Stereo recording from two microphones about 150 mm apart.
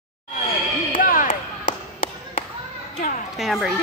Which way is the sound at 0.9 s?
65° left (ahead or behind).